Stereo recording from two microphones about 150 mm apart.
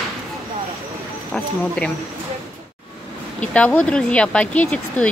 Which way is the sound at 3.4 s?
10° left (ahead or behind).